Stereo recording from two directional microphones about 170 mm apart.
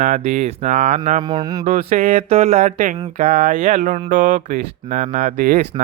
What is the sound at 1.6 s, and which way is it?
Speech, 40° right (ahead or behind).